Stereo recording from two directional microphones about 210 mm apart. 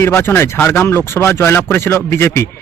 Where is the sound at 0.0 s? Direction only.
10° left (ahead or behind).